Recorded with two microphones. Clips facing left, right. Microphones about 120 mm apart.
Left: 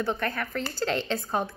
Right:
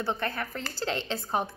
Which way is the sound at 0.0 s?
20° right (ahead or behind).